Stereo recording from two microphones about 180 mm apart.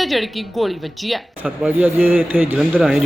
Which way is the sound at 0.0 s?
Centre (ahead or behind).